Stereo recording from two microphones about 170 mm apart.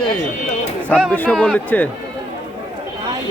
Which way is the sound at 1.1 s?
5° left (ahead or behind).